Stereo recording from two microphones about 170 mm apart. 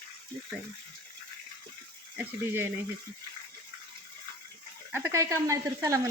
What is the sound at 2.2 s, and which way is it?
Speech, 10° right (ahead or behind).